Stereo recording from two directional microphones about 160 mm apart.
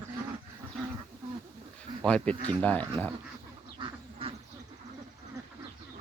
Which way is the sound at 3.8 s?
30° right (ahead or behind).